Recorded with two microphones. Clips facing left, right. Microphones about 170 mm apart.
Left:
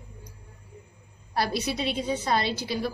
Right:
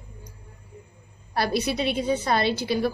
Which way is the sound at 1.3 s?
60° right (ahead or behind).